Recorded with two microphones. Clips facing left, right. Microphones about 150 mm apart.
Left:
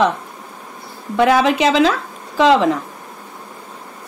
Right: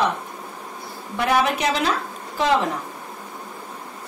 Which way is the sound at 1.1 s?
90° left.